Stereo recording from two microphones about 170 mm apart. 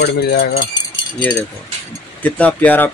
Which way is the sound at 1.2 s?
10° left (ahead or behind).